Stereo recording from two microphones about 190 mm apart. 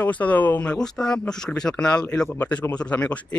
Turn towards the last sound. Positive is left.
turn(degrees=5)  # may be behind; listen again after turning